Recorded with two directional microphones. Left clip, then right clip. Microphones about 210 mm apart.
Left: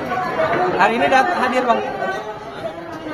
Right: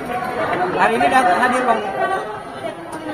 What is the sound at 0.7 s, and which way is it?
Speech, 25° left (ahead or behind).